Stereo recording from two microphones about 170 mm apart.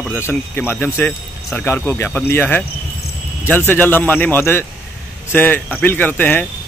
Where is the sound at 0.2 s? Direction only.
10° left (ahead or behind).